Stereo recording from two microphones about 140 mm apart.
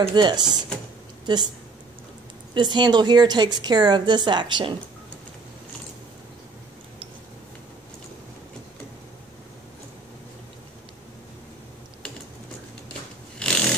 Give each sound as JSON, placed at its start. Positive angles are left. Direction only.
{"t": 0.0, "sound": "a woman's voice", "side_deg": -35}
{"t": 2.5, "sound": "a woman's voice", "side_deg": -35}
{"t": 13.4, "sound": "a sound", "side_deg": 5}